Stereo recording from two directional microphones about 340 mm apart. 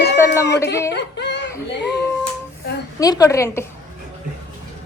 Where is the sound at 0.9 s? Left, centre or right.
Left.